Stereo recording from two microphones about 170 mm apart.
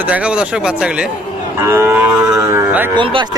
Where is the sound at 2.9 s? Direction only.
30° right (ahead or behind).